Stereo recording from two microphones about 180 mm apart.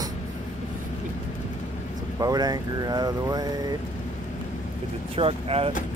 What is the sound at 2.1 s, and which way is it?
Speech, 20° right (ahead or behind).